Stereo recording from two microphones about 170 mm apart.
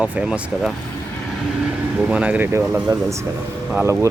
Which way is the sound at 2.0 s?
5° right (ahead or behind).